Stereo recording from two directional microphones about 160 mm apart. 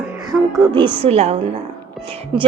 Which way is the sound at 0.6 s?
30° right (ahead or behind).